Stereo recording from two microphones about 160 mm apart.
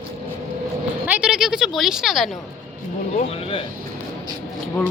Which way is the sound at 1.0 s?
10° right (ahead or behind).